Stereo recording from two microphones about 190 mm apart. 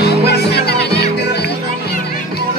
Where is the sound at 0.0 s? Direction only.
60° left (ahead or behind).